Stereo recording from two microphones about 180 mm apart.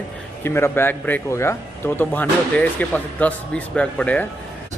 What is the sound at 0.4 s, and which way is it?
Speech, 10° left (ahead or behind).